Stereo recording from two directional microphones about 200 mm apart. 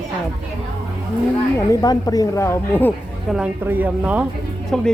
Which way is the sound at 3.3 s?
5° right (ahead or behind).